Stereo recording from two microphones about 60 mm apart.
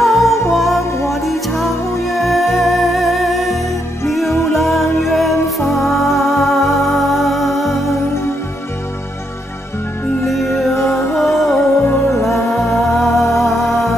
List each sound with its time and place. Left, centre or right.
0.0 s music: centre
10.2 s music: centre
10.7 s music: left
11.1 s music: centre